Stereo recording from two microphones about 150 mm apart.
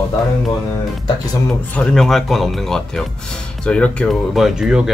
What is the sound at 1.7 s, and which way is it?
Speech, 5° left (ahead or behind).